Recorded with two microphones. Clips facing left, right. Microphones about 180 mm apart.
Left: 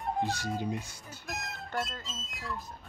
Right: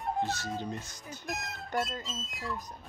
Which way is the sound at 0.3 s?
10° left (ahead or behind).